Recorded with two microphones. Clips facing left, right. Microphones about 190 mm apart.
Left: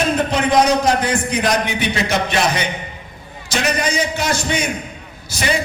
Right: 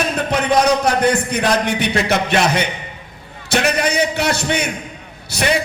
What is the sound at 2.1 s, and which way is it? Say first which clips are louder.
A man's voice: right 3 dB; 55° right (ahead or behind).